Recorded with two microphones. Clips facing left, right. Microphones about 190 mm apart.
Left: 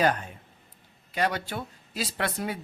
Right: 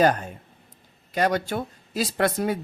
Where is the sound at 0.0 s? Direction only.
40° right (ahead or behind).